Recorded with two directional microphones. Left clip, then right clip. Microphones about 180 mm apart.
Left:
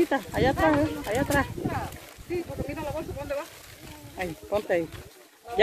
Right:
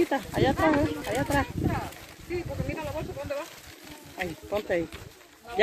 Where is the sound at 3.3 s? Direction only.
50° left (ahead or behind).